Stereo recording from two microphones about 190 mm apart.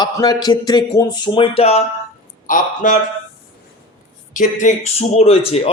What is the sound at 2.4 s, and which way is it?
Speech, 45° left (ahead or behind).